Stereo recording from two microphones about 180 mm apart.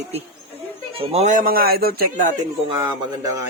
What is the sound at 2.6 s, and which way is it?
Speech, 20° right (ahead or behind).